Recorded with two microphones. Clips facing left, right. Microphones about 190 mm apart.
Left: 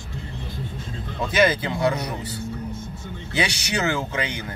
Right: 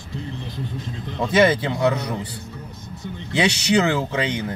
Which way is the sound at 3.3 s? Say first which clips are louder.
Right 7 dB; 25° right (ahead or behind).